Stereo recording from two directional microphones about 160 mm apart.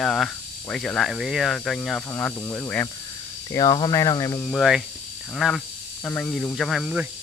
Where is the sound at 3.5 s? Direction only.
25° left (ahead or behind).